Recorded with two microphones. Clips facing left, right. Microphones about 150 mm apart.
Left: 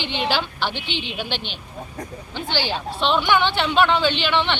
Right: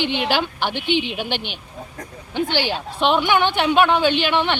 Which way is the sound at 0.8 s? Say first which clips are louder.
Right 7 dB; 55° right (ahead or behind).